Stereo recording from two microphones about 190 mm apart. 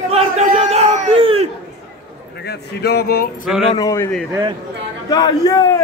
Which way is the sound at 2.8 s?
55° left (ahead or behind).